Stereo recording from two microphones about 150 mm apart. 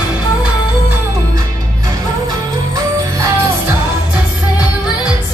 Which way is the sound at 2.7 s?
20° right (ahead or behind).